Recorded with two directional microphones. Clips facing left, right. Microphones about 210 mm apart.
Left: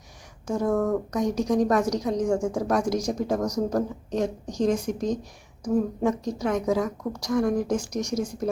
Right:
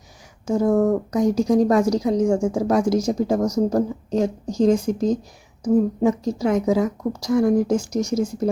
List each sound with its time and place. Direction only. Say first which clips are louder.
0.5 s a woman's voice: right 6 dB; 25° right (ahead or behind)